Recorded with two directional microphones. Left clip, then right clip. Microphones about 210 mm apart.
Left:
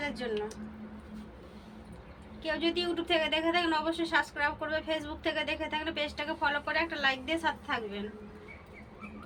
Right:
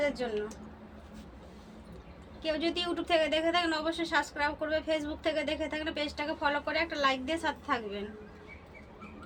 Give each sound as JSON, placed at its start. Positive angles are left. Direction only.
{"t": 0.1, "sound": "speech", "side_deg": -40}
{"t": 2.4, "sound": "a woman's voice", "side_deg": -40}